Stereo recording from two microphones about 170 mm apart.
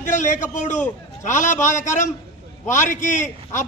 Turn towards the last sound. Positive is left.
turn(degrees=45)  # may be behind; listen again after turning